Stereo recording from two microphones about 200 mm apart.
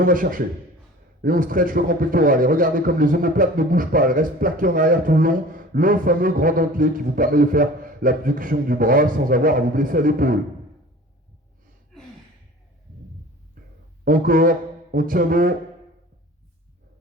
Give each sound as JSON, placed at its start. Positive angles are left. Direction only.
{"t": 0.0, "sound": "a man's voice", "side_deg": -45}
{"t": 14.0, "sound": "a man's voice", "side_deg": -45}